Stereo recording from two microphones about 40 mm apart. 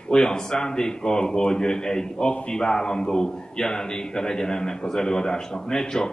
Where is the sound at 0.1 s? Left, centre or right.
Centre.